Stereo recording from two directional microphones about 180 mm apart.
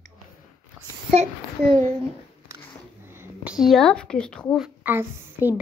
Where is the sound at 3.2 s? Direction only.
5° right (ahead or behind).